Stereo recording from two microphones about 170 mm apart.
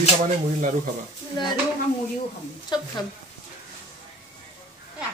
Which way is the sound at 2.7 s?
25° left (ahead or behind).